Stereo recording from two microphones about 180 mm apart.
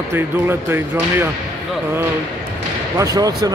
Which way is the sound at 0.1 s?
15° right (ahead or behind).